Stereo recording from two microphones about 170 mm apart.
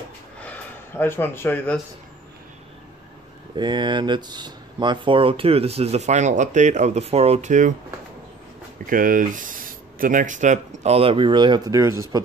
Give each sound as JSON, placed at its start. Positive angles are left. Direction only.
{"t": 0.4, "sound": "a sound", "side_deg": 10}
{"t": 3.5, "sound": "speech", "side_deg": -25}
{"t": 8.8, "sound": "speech", "side_deg": -55}